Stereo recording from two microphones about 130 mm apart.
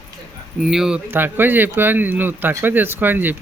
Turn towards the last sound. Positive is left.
turn(degrees=-15)  # may be behind; listen again after turning